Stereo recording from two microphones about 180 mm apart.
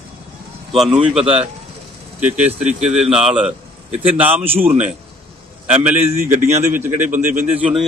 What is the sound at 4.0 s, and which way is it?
Speech, 30° right (ahead or behind).